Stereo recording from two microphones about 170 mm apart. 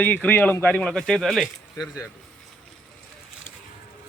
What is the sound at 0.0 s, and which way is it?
Speech, 10° left (ahead or behind).